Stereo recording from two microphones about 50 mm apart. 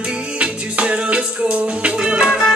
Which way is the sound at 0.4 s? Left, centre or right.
Right.